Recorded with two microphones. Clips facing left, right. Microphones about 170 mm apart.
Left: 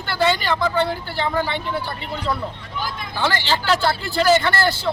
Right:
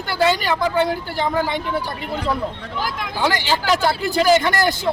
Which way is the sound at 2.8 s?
90° right.